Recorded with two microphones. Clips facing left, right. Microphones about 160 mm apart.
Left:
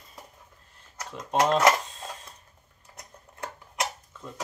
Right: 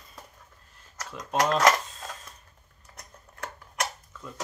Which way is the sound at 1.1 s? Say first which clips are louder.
Left 2 dB; 25° left (ahead or behind).